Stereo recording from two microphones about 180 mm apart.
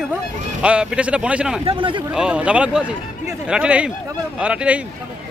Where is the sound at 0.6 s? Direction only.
5° right (ahead or behind).